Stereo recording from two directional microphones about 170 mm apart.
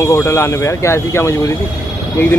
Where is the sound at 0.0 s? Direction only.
15° left (ahead or behind).